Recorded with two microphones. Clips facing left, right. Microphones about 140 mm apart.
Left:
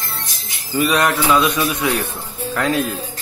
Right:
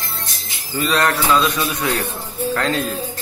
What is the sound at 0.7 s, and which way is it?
Speech, 15° left (ahead or behind).